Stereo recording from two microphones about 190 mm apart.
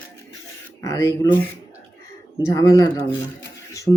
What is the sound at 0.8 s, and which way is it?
Speech, 15° left (ahead or behind).